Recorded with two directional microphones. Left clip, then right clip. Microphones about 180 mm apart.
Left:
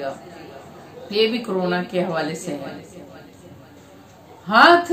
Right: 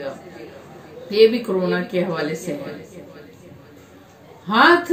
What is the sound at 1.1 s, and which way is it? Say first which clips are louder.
Female singing: right 5 dB; 25° left (ahead or behind).